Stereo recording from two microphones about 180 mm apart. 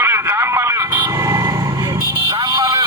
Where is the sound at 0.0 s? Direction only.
15° right (ahead or behind).